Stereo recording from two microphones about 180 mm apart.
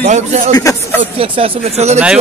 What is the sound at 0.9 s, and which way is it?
Speech, 30° right (ahead or behind).